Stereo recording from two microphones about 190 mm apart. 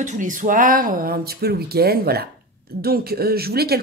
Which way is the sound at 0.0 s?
40° right (ahead or behind).